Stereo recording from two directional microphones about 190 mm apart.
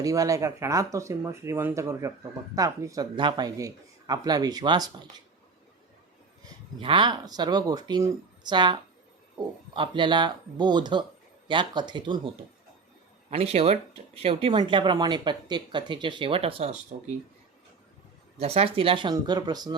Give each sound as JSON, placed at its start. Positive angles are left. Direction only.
{"t": 0.0, "sound": "speech", "side_deg": -20}
{"t": 6.7, "sound": "speech", "side_deg": -25}
{"t": 13.3, "sound": "speech", "side_deg": -30}
{"t": 18.3, "sound": "speech", "side_deg": -35}